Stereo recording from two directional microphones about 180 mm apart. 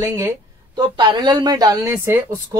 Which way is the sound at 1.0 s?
25° right (ahead or behind).